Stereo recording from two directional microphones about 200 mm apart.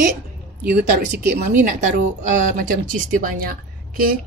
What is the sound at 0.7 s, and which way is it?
Speech, 50° right (ahead or behind).